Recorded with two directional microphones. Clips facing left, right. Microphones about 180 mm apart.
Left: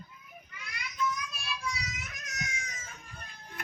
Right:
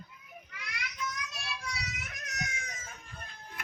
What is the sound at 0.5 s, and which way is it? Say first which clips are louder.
Children playing: even; 75° right (ahead or behind).